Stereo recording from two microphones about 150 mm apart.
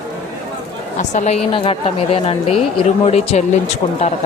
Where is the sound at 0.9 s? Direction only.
55° left (ahead or behind).